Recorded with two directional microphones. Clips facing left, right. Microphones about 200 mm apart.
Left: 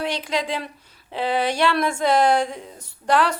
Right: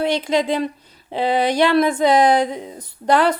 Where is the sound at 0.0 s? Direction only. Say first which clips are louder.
Right 6 dB; 25° right (ahead or behind).